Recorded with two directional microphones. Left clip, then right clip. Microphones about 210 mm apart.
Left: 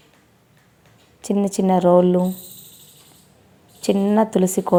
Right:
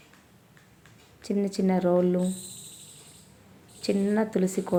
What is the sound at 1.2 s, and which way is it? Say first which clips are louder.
A woman's voice: left 7 dB; 30° left (ahead or behind).